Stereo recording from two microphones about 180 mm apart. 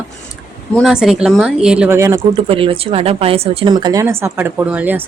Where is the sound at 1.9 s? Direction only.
15° right (ahead or behind).